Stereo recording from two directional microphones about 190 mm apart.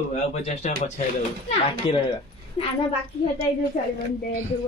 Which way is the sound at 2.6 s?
30° left (ahead or behind).